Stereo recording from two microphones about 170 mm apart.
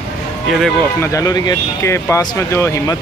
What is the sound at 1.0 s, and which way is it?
Speech, 20° left (ahead or behind).